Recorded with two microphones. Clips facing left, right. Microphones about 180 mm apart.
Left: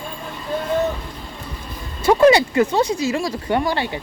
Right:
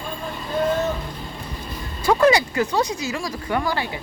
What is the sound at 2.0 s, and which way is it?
Speech, 25° left (ahead or behind).